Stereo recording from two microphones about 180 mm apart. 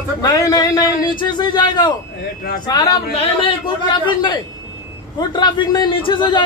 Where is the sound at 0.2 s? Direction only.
20° left (ahead or behind).